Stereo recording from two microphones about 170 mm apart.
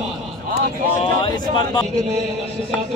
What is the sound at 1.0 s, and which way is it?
Speech, 30° left (ahead or behind).